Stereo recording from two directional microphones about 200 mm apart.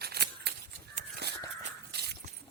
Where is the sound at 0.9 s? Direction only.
55° right (ahead or behind).